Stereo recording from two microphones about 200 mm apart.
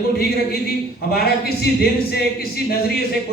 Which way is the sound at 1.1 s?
50° left (ahead or behind).